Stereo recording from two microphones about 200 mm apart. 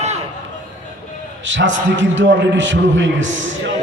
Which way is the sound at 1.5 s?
70° right (ahead or behind).